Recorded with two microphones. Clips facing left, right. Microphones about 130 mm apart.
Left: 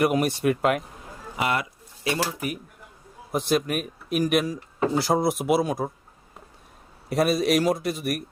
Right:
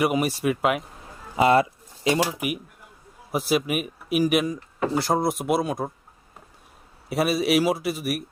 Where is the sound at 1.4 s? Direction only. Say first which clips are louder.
Right 8 dB; 30° right (ahead or behind).